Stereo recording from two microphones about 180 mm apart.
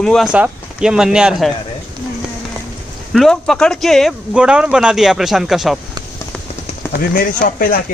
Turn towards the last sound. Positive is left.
turn(degrees=50)  # may be behind; listen again after turning